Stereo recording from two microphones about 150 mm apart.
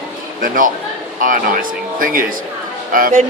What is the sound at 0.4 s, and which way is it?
Speech, 65° right (ahead or behind).